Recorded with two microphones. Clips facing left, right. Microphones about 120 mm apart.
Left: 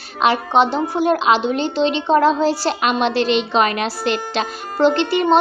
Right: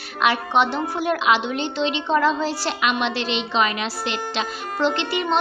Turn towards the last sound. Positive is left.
turn(degrees=40)  # may be behind; listen again after turning